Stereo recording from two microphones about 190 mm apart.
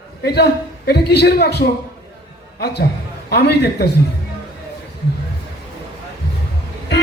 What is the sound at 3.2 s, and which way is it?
Speech, 60° left (ahead or behind).